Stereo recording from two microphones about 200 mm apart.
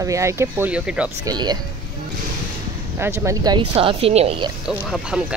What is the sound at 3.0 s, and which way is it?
Speech, 15° right (ahead or behind).